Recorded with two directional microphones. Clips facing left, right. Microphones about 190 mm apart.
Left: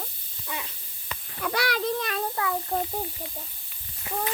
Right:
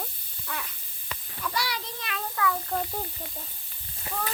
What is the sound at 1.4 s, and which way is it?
Speech, 60° left (ahead or behind).